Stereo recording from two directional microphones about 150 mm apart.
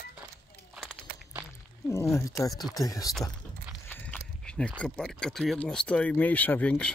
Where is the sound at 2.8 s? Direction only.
25° left (ahead or behind).